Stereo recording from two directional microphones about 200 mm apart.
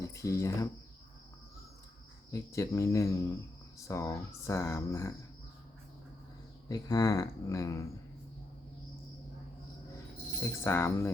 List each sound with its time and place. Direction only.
0.0 s speech: 15° left (ahead or behind)
2.3 s speech: 15° left (ahead or behind)
6.7 s speech: 20° left (ahead or behind)
10.6 s speech: 10° left (ahead or behind)